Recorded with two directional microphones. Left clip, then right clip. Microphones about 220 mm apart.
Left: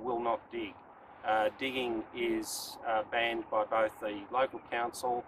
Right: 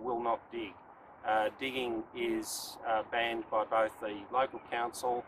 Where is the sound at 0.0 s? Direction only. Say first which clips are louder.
Even; 15° right (ahead or behind).